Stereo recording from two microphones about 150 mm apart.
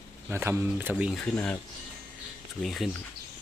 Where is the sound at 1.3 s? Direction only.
10° left (ahead or behind).